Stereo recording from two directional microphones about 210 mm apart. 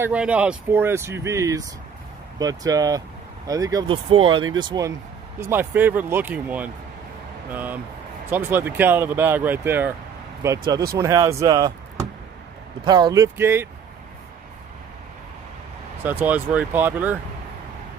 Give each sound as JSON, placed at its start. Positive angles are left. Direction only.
{"t": 0.0, "sound": "speech", "side_deg": -5}
{"t": 16.0, "sound": "speech", "side_deg": -10}